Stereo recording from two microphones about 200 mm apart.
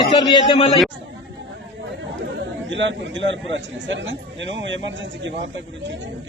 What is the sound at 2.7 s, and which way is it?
A man's voice, 65° right (ahead or behind).